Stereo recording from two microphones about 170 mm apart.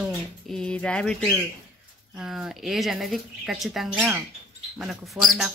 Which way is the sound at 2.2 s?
5° right (ahead or behind).